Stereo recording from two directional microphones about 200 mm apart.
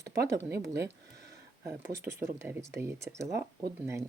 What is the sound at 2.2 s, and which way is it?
Speech, 15° right (ahead or behind).